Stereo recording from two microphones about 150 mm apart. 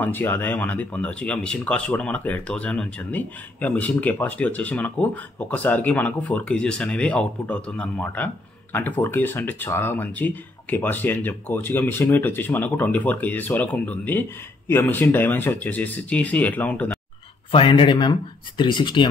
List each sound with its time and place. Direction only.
0.0 s speech: 10° left (ahead or behind)
17.5 s speech: 35° left (ahead or behind)